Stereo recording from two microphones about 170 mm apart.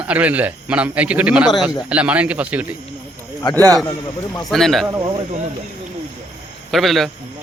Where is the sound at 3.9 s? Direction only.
20° left (ahead or behind).